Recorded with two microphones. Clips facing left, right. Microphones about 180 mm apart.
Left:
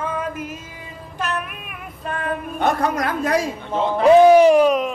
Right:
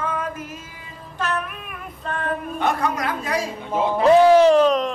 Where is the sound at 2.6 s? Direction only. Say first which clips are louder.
Left 3 dB; 45° left (ahead or behind).